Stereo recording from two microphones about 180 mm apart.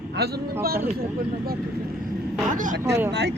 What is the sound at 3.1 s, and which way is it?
Speech, 70° right (ahead or behind).